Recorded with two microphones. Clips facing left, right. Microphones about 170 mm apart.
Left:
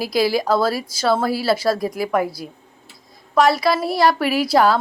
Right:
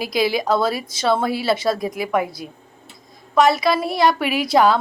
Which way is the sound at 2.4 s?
40° left (ahead or behind).